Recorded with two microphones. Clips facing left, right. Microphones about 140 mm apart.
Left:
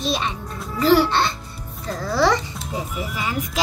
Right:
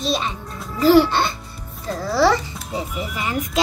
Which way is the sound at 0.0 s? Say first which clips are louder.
Right 1 dB; centre (ahead or behind).